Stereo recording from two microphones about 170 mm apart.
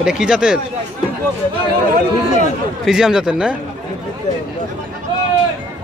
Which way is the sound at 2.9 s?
5° right (ahead or behind).